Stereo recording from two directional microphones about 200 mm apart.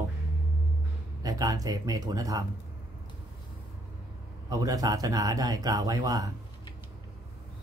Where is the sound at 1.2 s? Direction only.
15° right (ahead or behind).